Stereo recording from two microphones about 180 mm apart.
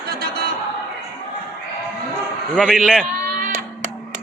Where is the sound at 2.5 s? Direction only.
Centre (ahead or behind).